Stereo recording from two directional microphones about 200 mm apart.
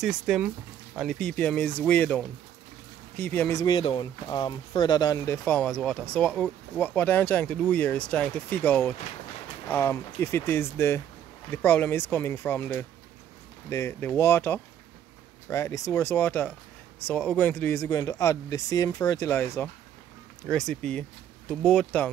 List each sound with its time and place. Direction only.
0.0 s speech: 5° right (ahead or behind)
3.6 s speech: 25° left (ahead or behind); by 22.1 s 5° left (ahead or behind)